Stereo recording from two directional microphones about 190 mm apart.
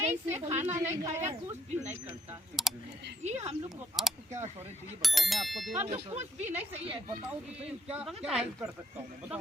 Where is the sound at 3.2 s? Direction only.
35° right (ahead or behind).